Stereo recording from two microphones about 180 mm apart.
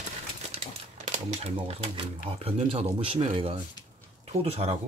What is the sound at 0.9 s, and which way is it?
Speech, 40° right (ahead or behind).